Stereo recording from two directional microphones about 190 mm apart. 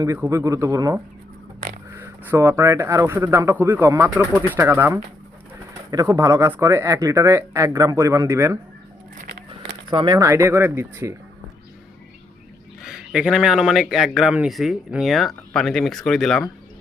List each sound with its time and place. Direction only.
0.0 s speech: 15° right (ahead or behind)
2.0 s speech: 10° right (ahead or behind)
9.9 s speech: 25° right (ahead or behind)
12.8 s a man's voice: centre (ahead or behind)